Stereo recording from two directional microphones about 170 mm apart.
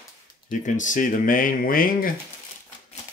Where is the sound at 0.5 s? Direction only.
50° left (ahead or behind).